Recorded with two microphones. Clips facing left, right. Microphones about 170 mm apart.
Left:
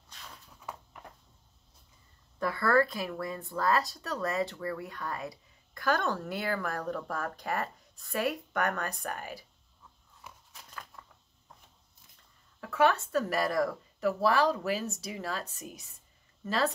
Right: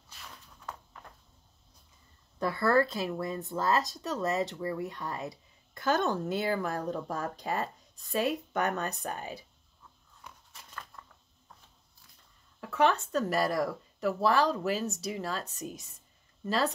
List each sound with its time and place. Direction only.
0.7 s a sound: 10° left (ahead or behind)
2.3 s speech: 25° right (ahead or behind)
10.2 s biting: 5° left (ahead or behind)
12.7 s speech: 5° left (ahead or behind)